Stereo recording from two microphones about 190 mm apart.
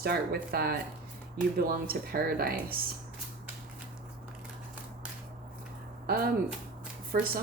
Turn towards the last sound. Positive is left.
turn(degrees=-50)  # may be behind; listen again after turning